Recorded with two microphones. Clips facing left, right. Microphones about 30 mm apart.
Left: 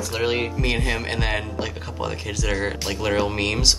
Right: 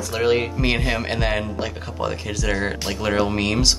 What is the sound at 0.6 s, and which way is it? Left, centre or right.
Music, right.